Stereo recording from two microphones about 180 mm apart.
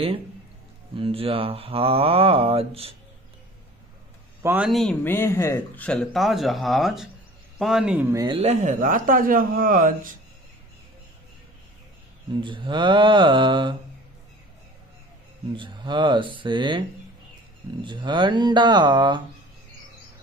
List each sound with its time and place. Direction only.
0.9 s speech: 30° right (ahead or behind)
4.4 s a man's voice: 10° right (ahead or behind)
4.6 s speech: centre (ahead or behind)
5.0 s speech: 15° left (ahead or behind); by 8.3 s 15° right (ahead or behind)
8.3 s a man's voice: 35° right (ahead or behind)
12.4 s speech: 25° right (ahead or behind)
15.5 s speech: 25° right (ahead or behind)
17.8 s speech: 25° right (ahead or behind)